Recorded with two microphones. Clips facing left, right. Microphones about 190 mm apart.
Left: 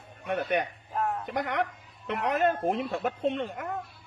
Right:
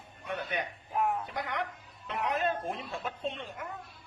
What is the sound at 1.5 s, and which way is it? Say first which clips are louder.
Speech: left 6 dB; 60° left (ahead or behind).